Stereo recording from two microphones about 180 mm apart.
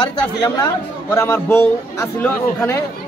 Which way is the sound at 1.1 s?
15° left (ahead or behind).